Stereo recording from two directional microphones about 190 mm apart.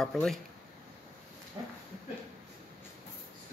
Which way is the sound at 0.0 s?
Centre (ahead or behind).